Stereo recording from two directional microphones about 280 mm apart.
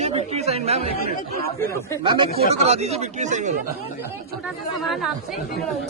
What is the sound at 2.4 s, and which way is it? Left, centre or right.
Speech, right.